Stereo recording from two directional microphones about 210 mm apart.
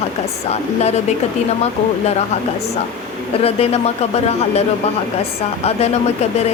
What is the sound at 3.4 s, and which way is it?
Speech, 30° left (ahead or behind).